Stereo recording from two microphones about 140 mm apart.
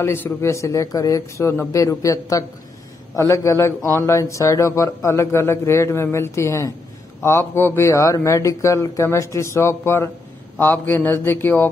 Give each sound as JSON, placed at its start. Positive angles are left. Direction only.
{"t": 0.0, "sound": "speech", "side_deg": 15}